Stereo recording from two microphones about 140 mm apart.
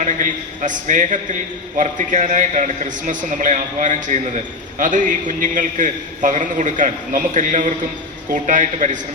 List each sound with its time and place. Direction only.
0.0 s a man's voice: 65° right (ahead or behind)